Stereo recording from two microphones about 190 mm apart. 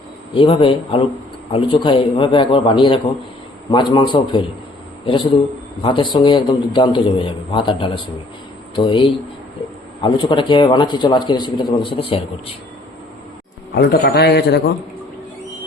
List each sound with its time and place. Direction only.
0.3 s a man's voice: 25° left (ahead or behind)
13.7 s a man's voice: 60° left (ahead or behind)